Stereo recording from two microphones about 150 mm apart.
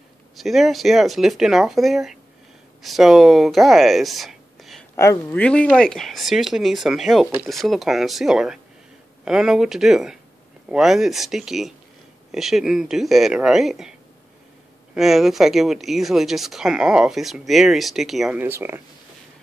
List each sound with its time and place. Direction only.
0.4 s speech: centre (ahead or behind)
4.9 s speech: 20° left (ahead or behind)
5.3 s speech: 10° left (ahead or behind)
15.0 s speech: centre (ahead or behind)
18.4 s speech: 15° right (ahead or behind)